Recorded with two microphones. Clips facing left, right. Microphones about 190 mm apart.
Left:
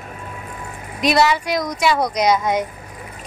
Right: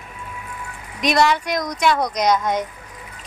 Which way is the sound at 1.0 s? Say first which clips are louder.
Left 1 dB; 5° left (ahead or behind).